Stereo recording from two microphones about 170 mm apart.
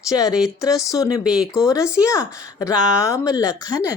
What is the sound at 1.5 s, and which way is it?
A woman's voice, 20° left (ahead or behind).